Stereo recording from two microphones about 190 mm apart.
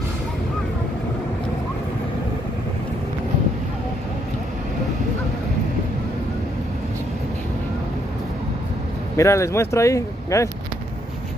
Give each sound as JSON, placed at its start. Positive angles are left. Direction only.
{"t": 9.1, "sound": "speech", "side_deg": 15}